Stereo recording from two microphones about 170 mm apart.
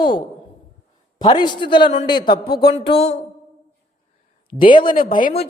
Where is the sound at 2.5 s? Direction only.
65° left (ahead or behind).